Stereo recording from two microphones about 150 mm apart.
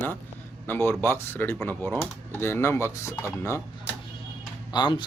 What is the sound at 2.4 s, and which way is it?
Speech, 15° left (ahead or behind).